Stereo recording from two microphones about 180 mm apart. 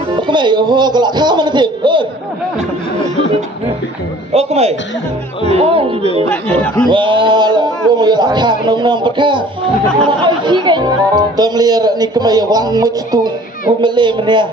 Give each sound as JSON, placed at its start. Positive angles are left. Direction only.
{"t": 0.3, "sound": "speech", "side_deg": -25}
{"t": 4.3, "sound": "a man's voice", "side_deg": -35}
{"t": 6.3, "sound": "speech", "side_deg": 10}
{"t": 6.9, "sound": "speech", "side_deg": -25}